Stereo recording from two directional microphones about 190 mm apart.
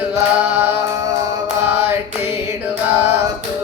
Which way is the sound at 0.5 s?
10° right (ahead or behind).